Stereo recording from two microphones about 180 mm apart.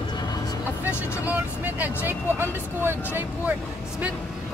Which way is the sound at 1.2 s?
10° right (ahead or behind).